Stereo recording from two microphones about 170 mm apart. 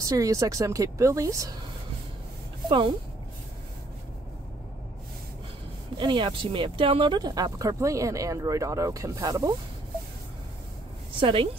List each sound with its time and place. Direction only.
0.0 s speech: 20° right (ahead or behind)
5.9 s speech: 30° right (ahead or behind)
11.1 s a woman's voice: 30° right (ahead or behind)